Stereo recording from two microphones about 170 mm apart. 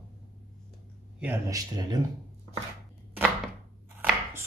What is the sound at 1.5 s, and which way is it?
Speech, 20° right (ahead or behind).